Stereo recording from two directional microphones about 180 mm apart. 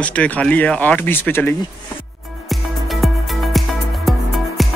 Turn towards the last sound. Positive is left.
turn(degrees=0)  # may be behind; listen again after turning